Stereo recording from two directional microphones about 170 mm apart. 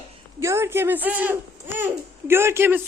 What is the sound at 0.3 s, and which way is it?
Speech, 15° right (ahead or behind).